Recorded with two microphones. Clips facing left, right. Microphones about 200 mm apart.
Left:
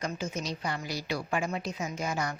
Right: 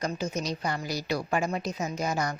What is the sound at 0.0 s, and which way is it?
A woman's voice, 40° right (ahead or behind).